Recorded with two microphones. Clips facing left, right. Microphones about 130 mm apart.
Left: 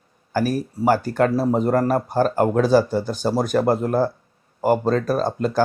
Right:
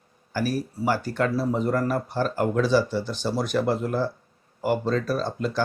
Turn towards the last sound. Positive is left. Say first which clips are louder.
# left 5 dB
turn(degrees=45)  # may be behind; listen again after turning